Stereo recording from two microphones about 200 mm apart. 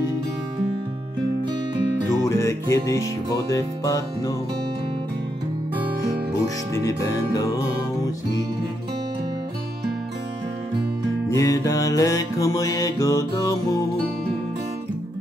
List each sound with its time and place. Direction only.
2.2 s music: 15° left (ahead or behind)
6.4 s music: 15° left (ahead or behind)
11.2 s music: 15° left (ahead or behind)